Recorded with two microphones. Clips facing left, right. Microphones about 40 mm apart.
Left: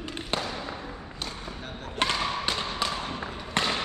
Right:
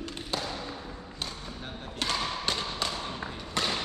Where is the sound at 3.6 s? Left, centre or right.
Left.